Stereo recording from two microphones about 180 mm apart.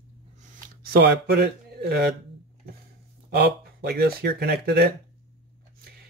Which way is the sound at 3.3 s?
60° right (ahead or behind).